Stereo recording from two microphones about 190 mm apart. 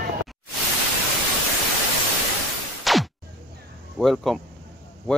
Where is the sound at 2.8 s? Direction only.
Centre (ahead or behind).